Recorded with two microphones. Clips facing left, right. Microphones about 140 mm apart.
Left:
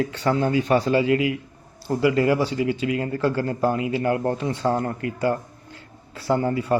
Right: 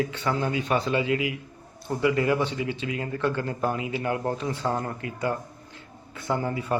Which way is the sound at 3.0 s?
35° left (ahead or behind).